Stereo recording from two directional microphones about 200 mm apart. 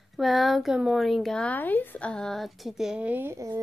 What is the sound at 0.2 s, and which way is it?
Speech, centre (ahead or behind).